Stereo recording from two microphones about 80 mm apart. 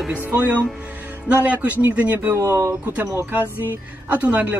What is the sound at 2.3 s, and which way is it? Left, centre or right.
Speech, right.